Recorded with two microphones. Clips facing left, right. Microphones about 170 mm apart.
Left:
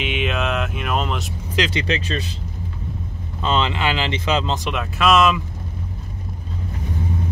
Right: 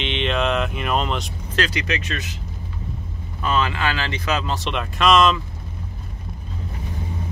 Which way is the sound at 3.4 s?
25° left (ahead or behind).